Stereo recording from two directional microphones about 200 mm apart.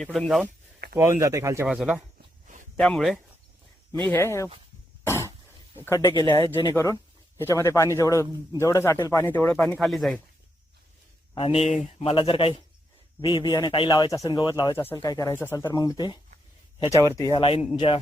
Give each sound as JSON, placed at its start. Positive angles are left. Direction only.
{"t": 0.0, "sound": "speech", "side_deg": 0}
{"t": 0.9, "sound": "speech", "side_deg": -15}
{"t": 1.6, "sound": "speech", "side_deg": 0}
{"t": 5.8, "sound": "speech", "side_deg": 15}
{"t": 11.3, "sound": "speech", "side_deg": 25}
{"t": 11.6, "sound": "speech", "side_deg": 0}
{"t": 11.9, "sound": "speech", "side_deg": 25}
{"t": 17.3, "sound": "speech", "side_deg": 30}